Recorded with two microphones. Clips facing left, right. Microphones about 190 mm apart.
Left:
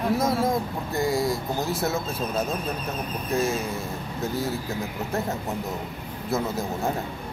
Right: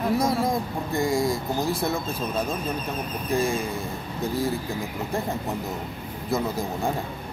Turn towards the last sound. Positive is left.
turn(degrees=5)  # may be behind; listen again after turning